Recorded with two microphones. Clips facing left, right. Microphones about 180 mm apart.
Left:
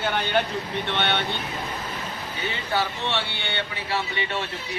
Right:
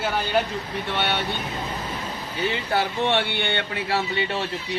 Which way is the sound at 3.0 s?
55° right (ahead or behind).